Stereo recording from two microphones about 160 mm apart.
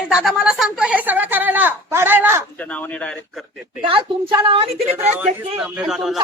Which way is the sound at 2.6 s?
10° left (ahead or behind).